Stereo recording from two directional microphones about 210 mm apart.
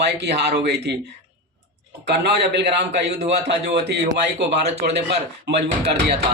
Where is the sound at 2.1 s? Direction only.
50° right (ahead or behind).